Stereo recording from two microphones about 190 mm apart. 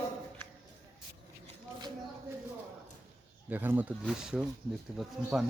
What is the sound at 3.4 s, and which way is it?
Speech, 10° right (ahead or behind).